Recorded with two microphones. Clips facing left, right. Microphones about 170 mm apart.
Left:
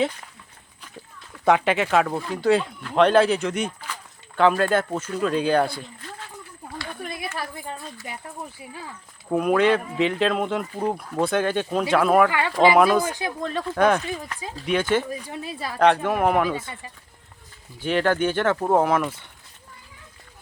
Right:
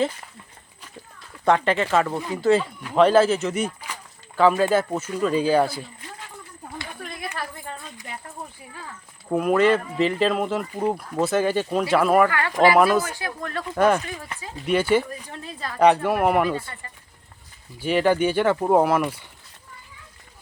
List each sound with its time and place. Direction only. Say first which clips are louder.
1.5 s speech: even; 5° left (ahead or behind)
9.3 s speech: right 1 dB; centre (ahead or behind)
12.3 s speech: left 1 dB; 15° left (ahead or behind)
12.7 s speech: left 1 dB; 5° right (ahead or behind)
13.1 s speech: left 4 dB; 20° left (ahead or behind)
13.7 s speech: right 1 dB; 5° right (ahead or behind)
15.0 s speech: left 4 dB; 10° left (ahead or behind)
16.0 s speech: right 1 dB; 5° right (ahead or behind)
17.7 s speech: right 2 dB; 10° right (ahead or behind)